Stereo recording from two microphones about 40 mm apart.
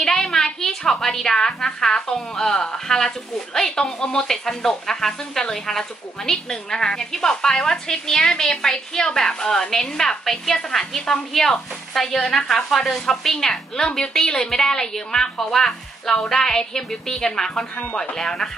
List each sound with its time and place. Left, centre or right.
0.0 s a sound: centre
1.0 s speech: centre
13.8 s a woman's voice: left
14.3 s speech: centre